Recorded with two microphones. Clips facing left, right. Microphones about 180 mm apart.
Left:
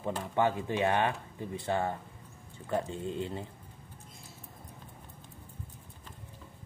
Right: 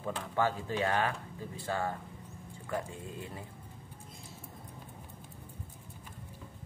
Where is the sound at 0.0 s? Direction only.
20° left (ahead or behind).